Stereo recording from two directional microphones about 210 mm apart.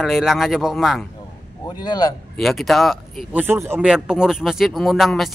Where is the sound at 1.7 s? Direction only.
20° left (ahead or behind).